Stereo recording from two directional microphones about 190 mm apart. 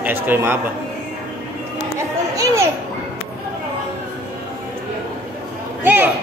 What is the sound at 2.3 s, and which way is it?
Children playing, 15° right (ahead or behind).